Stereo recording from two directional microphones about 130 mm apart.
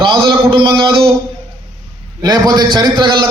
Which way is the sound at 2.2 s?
30° right (ahead or behind).